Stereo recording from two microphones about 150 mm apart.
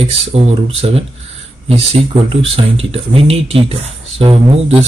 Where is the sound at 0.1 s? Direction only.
45° right (ahead or behind).